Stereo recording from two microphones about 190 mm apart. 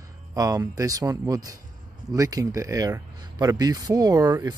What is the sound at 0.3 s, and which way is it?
Speech, 20° right (ahead or behind).